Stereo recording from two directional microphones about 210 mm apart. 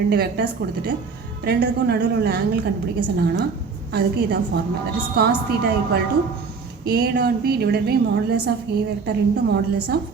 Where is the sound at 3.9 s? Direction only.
50° right (ahead or behind).